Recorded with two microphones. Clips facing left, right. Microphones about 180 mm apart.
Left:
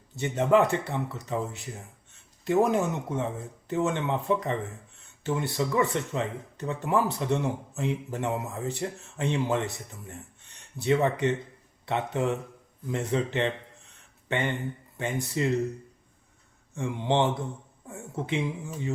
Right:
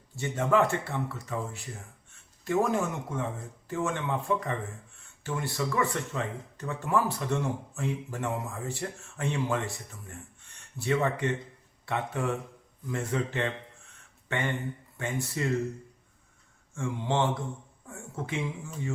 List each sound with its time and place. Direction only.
0.2 s speech: 20° left (ahead or behind)
16.7 s speech: 20° left (ahead or behind)